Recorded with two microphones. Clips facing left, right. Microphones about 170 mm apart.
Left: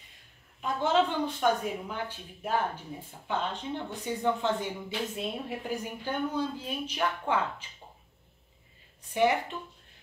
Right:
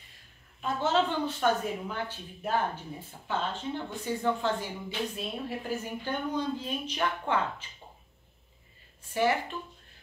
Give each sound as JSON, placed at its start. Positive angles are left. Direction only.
{"t": 0.6, "sound": "a woman's voice", "side_deg": 10}
{"t": 9.1, "sound": "speech", "side_deg": 20}